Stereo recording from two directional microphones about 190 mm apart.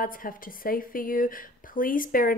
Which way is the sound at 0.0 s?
45° left (ahead or behind).